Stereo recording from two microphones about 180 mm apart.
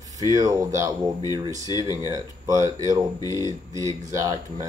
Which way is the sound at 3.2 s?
20° left (ahead or behind).